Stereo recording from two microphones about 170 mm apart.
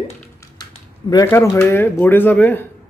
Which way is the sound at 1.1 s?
20° left (ahead or behind).